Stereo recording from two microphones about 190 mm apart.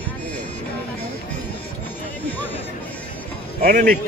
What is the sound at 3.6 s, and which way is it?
Speech, 45° right (ahead or behind).